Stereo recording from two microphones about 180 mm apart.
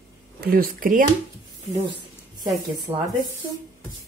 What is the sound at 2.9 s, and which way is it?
Speech, 30° right (ahead or behind).